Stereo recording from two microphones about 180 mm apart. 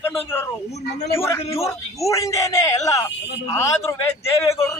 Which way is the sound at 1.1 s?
15° left (ahead or behind).